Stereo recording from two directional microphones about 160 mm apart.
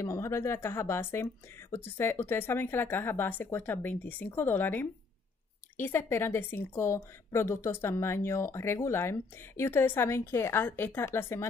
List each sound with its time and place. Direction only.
0.0 s a woman's voice: 15° left (ahead or behind)